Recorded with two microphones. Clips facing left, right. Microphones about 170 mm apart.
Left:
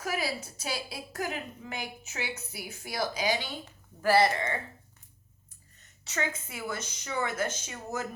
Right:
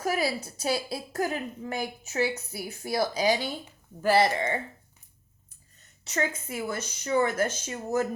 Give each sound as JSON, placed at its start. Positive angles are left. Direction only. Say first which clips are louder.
{"t": 0.0, "sound": "a woman's voice", "louder": "right 5 dB", "side_deg": -35}
{"t": 4.0, "sound": "speech", "louder": "right 1 dB", "side_deg": -20}
{"t": 6.1, "sound": "a woman's voice", "louder": "right 4 dB", "side_deg": -35}